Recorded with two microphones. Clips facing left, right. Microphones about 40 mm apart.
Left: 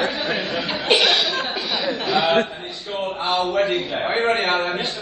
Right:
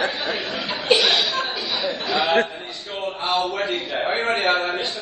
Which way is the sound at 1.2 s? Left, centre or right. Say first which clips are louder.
Left 1 dB; left.